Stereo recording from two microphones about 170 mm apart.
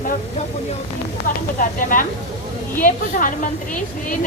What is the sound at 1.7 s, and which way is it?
A woman's voice, 55° left (ahead or behind).